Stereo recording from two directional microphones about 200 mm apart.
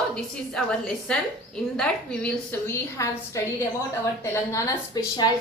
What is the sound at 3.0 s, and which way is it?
A woman's voice, 15° left (ahead or behind).